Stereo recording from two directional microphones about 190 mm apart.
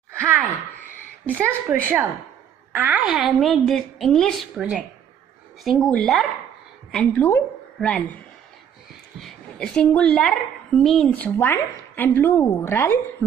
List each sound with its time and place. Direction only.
0.2 s a sound: 10° right (ahead or behind)
1.2 s a woman's voice: 10° right (ahead or behind); by 8.2 s 5° left (ahead or behind)
9.2 s a woman's voice: 5° left (ahead or behind)